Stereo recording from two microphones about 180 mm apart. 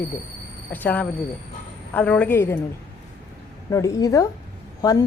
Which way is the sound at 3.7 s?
20° left (ahead or behind).